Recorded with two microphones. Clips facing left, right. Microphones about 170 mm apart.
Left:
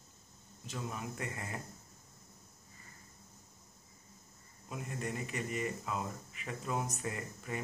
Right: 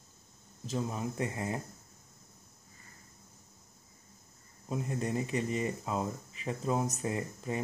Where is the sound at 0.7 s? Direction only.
30° right (ahead or behind).